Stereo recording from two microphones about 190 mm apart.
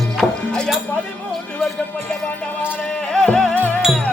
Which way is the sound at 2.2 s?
5° left (ahead or behind).